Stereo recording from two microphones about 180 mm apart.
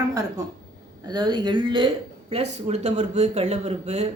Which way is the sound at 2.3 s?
40° right (ahead or behind).